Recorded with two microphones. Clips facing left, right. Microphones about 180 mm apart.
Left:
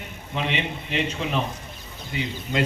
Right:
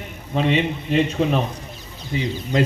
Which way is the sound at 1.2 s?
45° right (ahead or behind).